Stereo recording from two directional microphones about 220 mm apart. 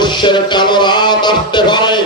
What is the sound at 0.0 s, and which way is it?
Music, 20° left (ahead or behind).